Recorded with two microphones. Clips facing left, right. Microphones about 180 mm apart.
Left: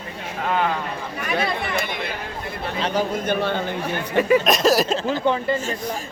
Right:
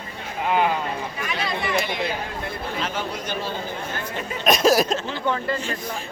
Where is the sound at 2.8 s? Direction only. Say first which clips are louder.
Left 8 dB; 40° left (ahead or behind).